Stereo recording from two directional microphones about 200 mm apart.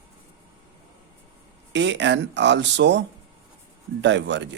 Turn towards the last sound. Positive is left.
turn(degrees=-60)  # may be behind; listen again after turning